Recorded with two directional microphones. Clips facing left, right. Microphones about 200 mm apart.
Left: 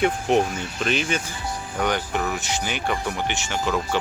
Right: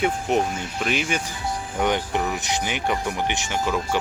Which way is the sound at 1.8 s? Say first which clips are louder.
Right 1 dB; 20° right (ahead or behind).